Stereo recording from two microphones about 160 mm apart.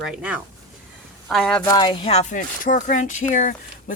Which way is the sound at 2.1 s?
50° left (ahead or behind).